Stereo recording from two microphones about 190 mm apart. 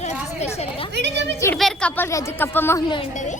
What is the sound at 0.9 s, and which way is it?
Speech, 65° right (ahead or behind).